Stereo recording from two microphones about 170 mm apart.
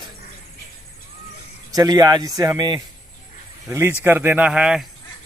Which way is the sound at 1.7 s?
20° right (ahead or behind).